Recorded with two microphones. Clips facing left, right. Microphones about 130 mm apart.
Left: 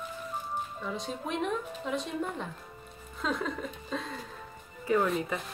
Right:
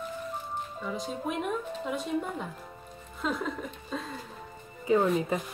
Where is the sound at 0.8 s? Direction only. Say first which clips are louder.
Right 2 dB; centre (ahead or behind).